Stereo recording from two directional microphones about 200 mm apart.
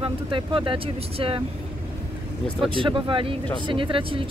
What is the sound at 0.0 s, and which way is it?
Speech, 25° right (ahead or behind).